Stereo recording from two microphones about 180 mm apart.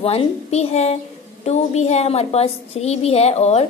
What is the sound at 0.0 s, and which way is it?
A woman's voice, 35° left (ahead or behind).